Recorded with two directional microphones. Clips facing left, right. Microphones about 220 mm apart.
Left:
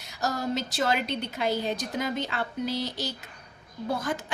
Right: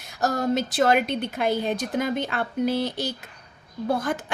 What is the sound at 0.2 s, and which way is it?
A woman's voice, 50° right (ahead or behind).